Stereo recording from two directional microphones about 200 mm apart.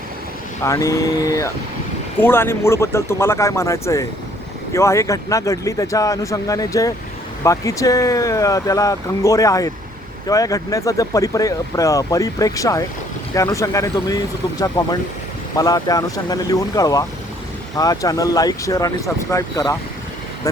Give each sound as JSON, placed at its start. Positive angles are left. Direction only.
{"t": 0.6, "sound": "speech", "side_deg": 15}